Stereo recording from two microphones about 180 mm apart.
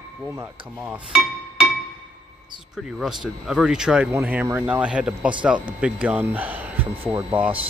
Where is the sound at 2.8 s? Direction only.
Centre (ahead or behind).